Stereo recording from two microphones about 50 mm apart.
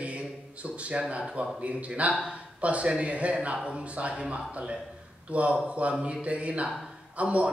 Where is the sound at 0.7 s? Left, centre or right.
Right.